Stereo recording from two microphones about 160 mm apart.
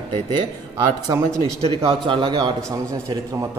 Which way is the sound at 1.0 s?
20° right (ahead or behind).